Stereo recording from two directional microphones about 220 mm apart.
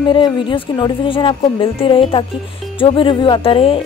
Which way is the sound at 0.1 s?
20° left (ahead or behind).